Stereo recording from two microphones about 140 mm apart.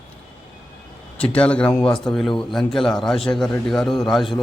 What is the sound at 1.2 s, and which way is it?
Speech, 10° left (ahead or behind).